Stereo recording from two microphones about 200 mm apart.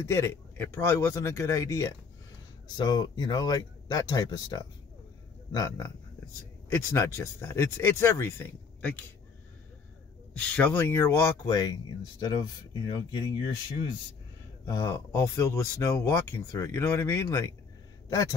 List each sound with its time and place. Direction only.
0.0 s speech: 15° left (ahead or behind)
10.3 s speech: 5° left (ahead or behind); by 13.3 s 20° left (ahead or behind)
14.7 s speech: 20° left (ahead or behind)